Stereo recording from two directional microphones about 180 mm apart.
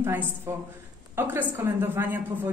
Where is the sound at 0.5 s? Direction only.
15° right (ahead or behind).